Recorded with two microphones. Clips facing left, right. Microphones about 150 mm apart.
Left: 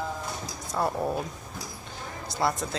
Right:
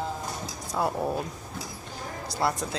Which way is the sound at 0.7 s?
5° right (ahead or behind).